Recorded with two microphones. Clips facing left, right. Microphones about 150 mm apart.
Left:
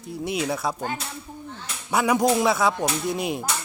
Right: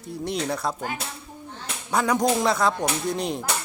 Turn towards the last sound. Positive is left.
turn(degrees=5)  # may be behind; listen again after turning